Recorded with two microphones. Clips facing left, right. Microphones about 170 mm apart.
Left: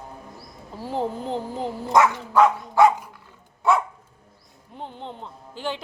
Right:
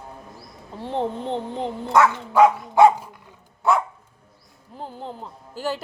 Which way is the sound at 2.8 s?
20° right (ahead or behind).